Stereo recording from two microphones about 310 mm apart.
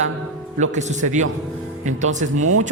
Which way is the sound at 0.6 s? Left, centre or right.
Right.